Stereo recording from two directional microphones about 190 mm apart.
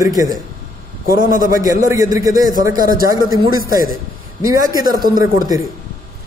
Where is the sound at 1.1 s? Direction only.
45° right (ahead or behind).